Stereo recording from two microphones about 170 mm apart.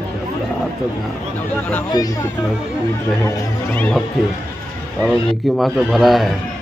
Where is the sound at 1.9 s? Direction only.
25° left (ahead or behind).